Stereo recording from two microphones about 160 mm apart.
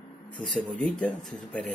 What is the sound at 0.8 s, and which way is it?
Speech, 10° left (ahead or behind).